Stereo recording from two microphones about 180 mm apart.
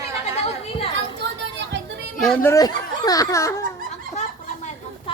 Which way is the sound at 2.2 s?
5° left (ahead or behind).